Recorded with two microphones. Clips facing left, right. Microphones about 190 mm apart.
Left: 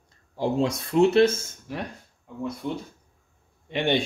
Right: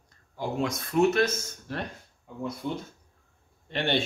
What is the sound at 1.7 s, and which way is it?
Speech, 10° left (ahead or behind).